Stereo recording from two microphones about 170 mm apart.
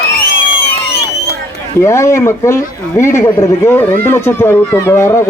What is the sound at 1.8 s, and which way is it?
Speech, 15° left (ahead or behind).